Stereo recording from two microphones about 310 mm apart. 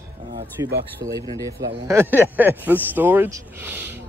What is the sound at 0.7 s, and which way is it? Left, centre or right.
Speech, right.